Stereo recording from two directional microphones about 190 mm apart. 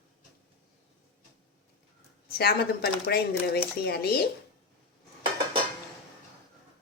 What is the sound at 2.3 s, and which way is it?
Speech, 55° left (ahead or behind).